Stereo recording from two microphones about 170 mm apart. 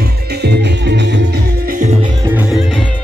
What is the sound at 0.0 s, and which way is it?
Music, 70° right (ahead or behind).